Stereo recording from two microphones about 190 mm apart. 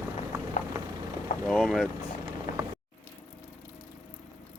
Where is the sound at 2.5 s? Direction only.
40° left (ahead or behind).